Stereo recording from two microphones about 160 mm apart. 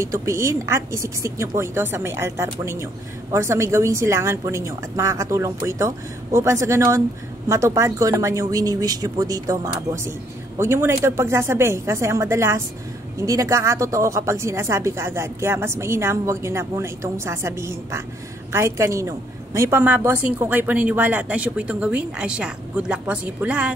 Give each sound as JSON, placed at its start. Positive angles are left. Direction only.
{"t": 0.0, "sound": "speech", "side_deg": -20}